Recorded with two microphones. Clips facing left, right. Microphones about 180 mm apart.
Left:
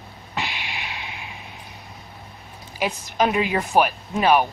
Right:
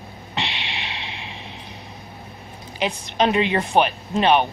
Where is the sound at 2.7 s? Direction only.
5° left (ahead or behind).